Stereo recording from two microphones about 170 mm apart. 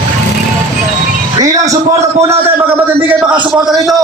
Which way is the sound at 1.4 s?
20° right (ahead or behind).